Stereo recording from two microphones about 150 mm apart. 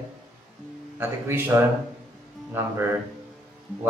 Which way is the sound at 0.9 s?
15° right (ahead or behind).